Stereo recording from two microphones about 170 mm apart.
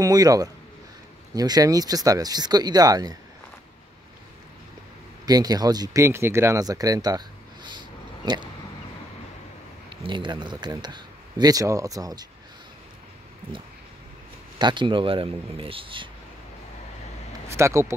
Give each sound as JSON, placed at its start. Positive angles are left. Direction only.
{"t": 0.0, "sound": "speech", "side_deg": -20}
{"t": 5.2, "sound": "speech", "side_deg": -25}
{"t": 9.8, "sound": "speech", "side_deg": -30}
{"t": 14.6, "sound": "a man's voice", "side_deg": -25}
{"t": 17.5, "sound": "speech", "side_deg": -15}